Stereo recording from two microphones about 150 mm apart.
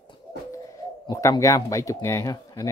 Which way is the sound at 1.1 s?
20° left (ahead or behind).